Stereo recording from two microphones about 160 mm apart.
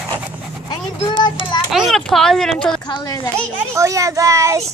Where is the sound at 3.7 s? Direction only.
20° right (ahead or behind).